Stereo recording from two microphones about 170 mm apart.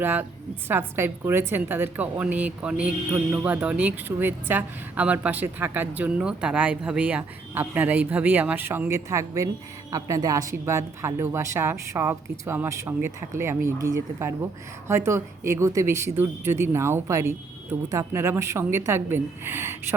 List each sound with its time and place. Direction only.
0.0 s a woman's voice: 10° right (ahead or behind)